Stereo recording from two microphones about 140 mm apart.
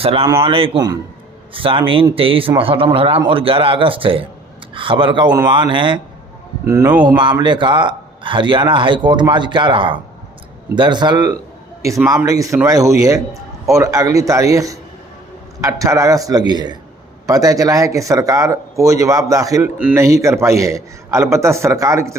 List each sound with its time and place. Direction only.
0.0 s a man's voice: 45° right (ahead or behind)
6.7 s speech: 20° right (ahead or behind)
7.2 s speech: 35° right (ahead or behind)